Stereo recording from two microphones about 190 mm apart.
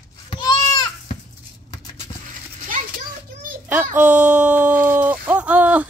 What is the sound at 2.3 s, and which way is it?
Horse, 45° right (ahead or behind).